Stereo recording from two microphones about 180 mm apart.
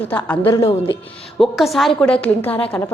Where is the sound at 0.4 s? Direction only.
15° left (ahead or behind).